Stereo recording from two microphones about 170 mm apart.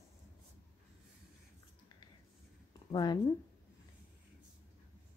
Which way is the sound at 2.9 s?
25° left (ahead or behind).